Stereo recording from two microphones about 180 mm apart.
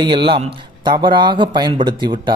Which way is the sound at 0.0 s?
25° right (ahead or behind).